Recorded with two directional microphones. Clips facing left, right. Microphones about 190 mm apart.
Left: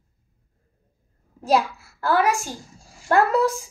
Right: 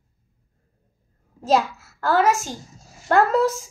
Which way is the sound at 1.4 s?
10° left (ahead or behind).